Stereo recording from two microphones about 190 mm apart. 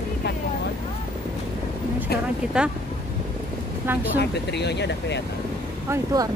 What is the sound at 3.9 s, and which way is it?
Speech, 10° right (ahead or behind).